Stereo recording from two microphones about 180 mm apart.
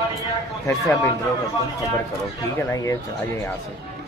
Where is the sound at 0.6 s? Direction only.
15° left (ahead or behind).